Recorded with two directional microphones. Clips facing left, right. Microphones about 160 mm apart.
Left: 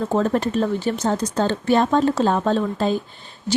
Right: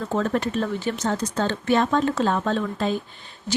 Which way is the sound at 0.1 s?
30° left (ahead or behind).